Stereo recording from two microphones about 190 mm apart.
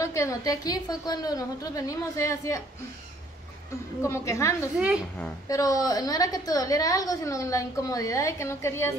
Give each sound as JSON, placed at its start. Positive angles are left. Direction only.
{"t": 0.0, "sound": "a woman's voice", "side_deg": 15}
{"t": 4.0, "sound": "a woman's voice", "side_deg": 15}
{"t": 4.7, "sound": "a woman's voice", "side_deg": -5}
{"t": 5.5, "sound": "a woman's voice", "side_deg": 20}